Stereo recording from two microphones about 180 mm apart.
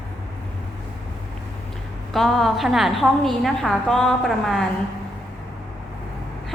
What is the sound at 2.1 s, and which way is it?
A woman's voice, centre (ahead or behind).